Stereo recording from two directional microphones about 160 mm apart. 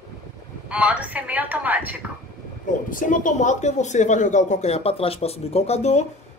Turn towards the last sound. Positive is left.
turn(degrees=45)  # may be behind; listen again after turning